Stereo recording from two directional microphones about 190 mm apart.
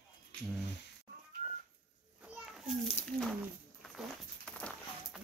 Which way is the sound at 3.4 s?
Centre (ahead or behind).